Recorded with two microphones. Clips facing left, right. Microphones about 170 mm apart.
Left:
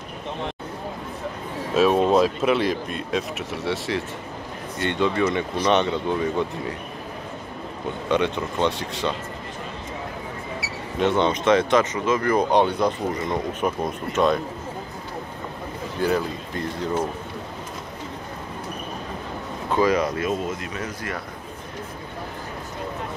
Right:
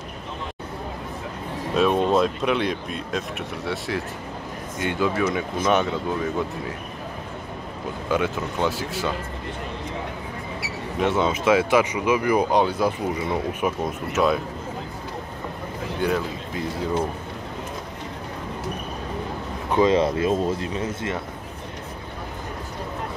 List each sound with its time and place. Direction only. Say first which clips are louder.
1.7 s speech: left 2 dB; centre (ahead or behind)
8.1 s speech: left 1 dB; centre (ahead or behind)
11.0 s speech: left 1 dB; 5° right (ahead or behind)
16.0 s speech: left 2 dB; centre (ahead or behind)
19.7 s speech: right 2 dB; 25° right (ahead or behind)